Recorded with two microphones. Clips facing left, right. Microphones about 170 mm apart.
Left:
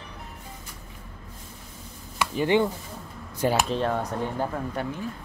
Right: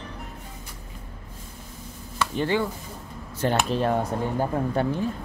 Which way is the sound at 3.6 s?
5° right (ahead or behind).